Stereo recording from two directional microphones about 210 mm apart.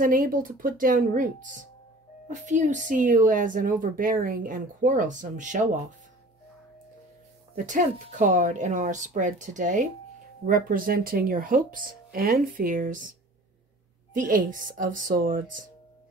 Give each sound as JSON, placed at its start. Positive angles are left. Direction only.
{"t": 0.0, "sound": "speech", "side_deg": -40}
{"t": 7.5, "sound": "speech", "side_deg": -35}
{"t": 14.1, "sound": "speech", "side_deg": -40}